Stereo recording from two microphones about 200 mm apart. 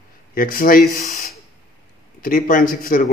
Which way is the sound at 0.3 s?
45° left (ahead or behind).